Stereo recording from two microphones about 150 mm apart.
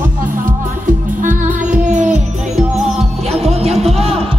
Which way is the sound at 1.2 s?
55° right (ahead or behind).